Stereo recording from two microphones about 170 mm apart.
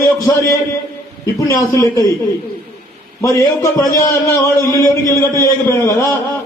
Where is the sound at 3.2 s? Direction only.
20° left (ahead or behind).